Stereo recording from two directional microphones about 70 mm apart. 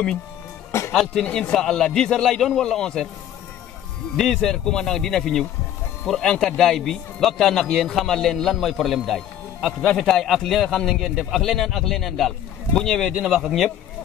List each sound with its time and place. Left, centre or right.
0.7 s music: left
1.3 s a man's voice: centre
4.2 s a man's voice: centre